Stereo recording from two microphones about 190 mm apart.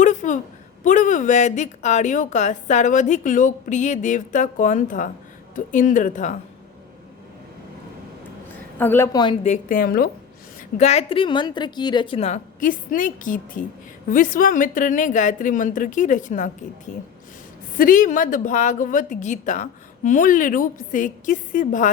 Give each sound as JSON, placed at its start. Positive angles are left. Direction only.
{"t": 0.0, "sound": "a sound", "side_deg": 40}
{"t": 0.9, "sound": "a woman's voice", "side_deg": 40}
{"t": 8.8, "sound": "a woman's voice", "side_deg": 10}
{"t": 9.4, "sound": "a woman's voice", "side_deg": 40}
{"t": 10.8, "sound": "a woman's voice", "side_deg": 35}
{"t": 17.7, "sound": "a woman's voice", "side_deg": 45}